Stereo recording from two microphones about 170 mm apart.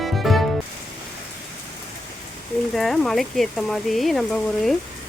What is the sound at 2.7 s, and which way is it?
Speech, centre (ahead or behind).